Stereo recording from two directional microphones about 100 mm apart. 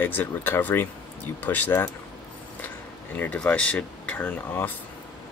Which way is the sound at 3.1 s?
15° left (ahead or behind).